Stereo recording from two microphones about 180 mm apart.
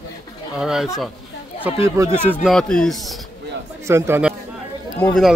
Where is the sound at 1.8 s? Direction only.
15° right (ahead or behind).